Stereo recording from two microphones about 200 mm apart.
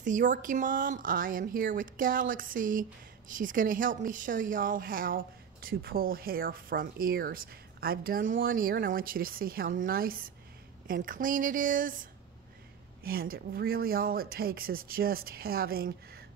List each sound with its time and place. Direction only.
0.0 s speech: 40° right (ahead or behind)